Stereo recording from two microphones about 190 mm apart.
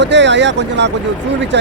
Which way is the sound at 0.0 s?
65° right (ahead or behind).